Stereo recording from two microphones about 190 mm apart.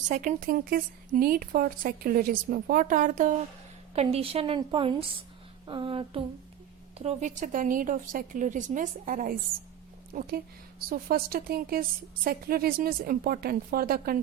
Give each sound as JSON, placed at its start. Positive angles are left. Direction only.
{"t": 0.1, "sound": "a woman's voice", "side_deg": -45}